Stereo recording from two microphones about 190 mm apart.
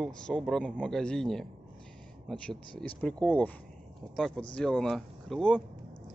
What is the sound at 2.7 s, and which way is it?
Speech, 30° left (ahead or behind).